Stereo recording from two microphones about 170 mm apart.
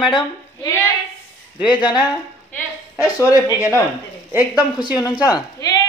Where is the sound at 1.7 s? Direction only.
25° left (ahead or behind).